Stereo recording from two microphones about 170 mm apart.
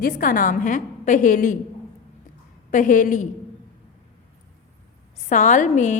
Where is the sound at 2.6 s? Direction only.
50° left (ahead or behind).